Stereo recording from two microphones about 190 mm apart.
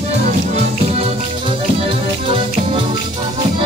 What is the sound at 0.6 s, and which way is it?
Music, 30° right (ahead or behind).